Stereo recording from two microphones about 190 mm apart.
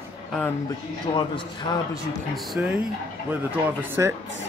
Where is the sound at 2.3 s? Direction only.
Centre (ahead or behind).